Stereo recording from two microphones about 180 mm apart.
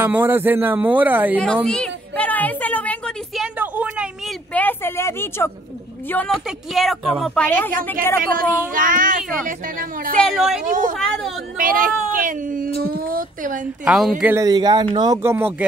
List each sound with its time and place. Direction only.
0.0 s speech: 10° right (ahead or behind)
1.4 s a sound: 5° left (ahead or behind)
3.5 s a sound: 10° right (ahead or behind)
4.6 s a sound: 10° left (ahead or behind)
6.0 s a woman's voice: 10° left (ahead or behind)
8.2 s speech: 50° right (ahead or behind)
10.1 s a woman's voice: centre (ahead or behind)
10.6 s speech: 50° right (ahead or behind)
11.0 s a woman's voice: 5° left (ahead or behind)
11.5 s speech: 50° right (ahead or behind)
13.8 s speech: 5° right (ahead or behind)